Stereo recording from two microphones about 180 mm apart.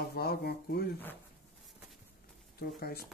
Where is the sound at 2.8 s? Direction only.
60° left (ahead or behind).